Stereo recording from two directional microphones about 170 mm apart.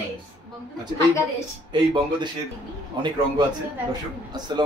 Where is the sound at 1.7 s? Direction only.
25° right (ahead or behind).